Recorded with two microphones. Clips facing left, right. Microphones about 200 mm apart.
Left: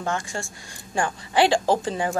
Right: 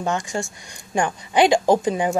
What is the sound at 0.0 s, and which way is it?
A woman's voice, 20° right (ahead or behind).